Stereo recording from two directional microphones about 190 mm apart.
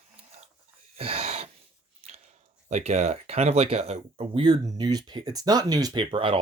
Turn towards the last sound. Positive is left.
turn(degrees=-25)  # may be behind; listen again after turning